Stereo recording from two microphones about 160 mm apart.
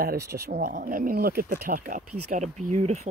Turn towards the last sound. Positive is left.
turn(degrees=-45)  # may be behind; listen again after turning